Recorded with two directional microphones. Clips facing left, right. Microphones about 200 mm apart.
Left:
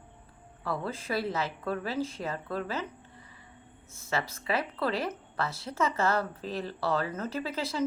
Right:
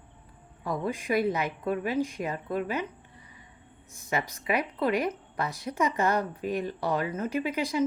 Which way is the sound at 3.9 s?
15° right (ahead or behind).